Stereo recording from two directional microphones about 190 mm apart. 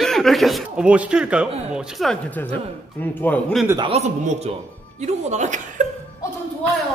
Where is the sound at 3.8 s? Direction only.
35° right (ahead or behind).